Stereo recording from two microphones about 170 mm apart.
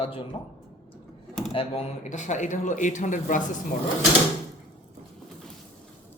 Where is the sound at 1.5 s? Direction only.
40° left (ahead or behind).